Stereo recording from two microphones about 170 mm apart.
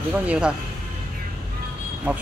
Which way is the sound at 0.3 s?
5° right (ahead or behind).